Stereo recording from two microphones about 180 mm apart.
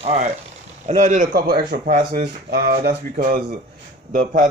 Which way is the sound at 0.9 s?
45° right (ahead or behind).